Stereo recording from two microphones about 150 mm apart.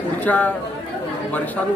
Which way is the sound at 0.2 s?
10° left (ahead or behind).